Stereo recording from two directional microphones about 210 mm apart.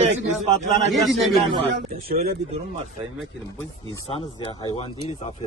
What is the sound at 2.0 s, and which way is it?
Speech, 45° right (ahead or behind).